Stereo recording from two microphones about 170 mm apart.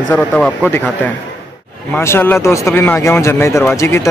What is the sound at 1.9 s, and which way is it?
A man's voice, 15° left (ahead or behind).